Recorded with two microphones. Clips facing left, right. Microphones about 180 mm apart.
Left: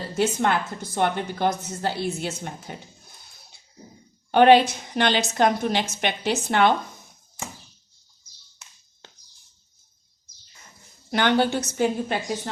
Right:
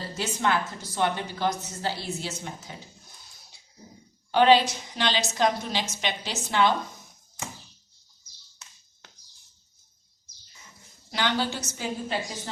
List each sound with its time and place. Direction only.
0.2 s a woman's voice: 55° left (ahead or behind)
4.3 s a woman's voice: 55° left (ahead or behind)
11.1 s a woman's voice: 55° left (ahead or behind)